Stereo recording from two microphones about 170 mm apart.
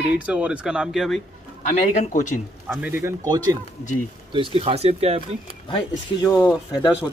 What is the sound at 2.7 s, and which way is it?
Speech, 10° right (ahead or behind).